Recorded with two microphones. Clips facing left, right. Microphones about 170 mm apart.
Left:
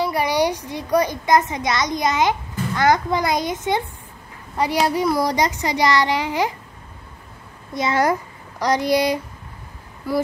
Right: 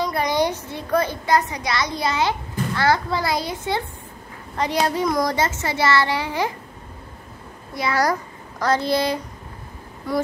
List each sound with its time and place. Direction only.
0.0 s a child's voice: 10° left (ahead or behind)
7.7 s a child's voice: 20° left (ahead or behind)